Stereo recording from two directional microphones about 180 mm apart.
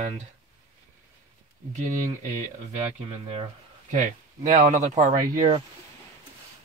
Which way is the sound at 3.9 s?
45° right (ahead or behind).